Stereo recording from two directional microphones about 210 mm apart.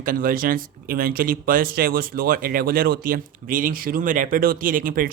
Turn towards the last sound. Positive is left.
turn(degrees=-40)  # may be behind; listen again after turning